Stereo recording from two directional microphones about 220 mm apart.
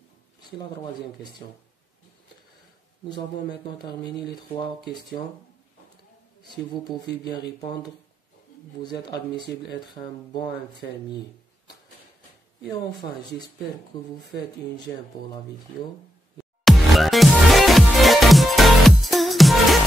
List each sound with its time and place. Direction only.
6.9 s speech: 20° left (ahead or behind)
9.1 s speech: 50° left (ahead or behind)
12.6 s speech: centre (ahead or behind)
13.9 s speech: 20° left (ahead or behind)
16.6 s music: centre (ahead or behind)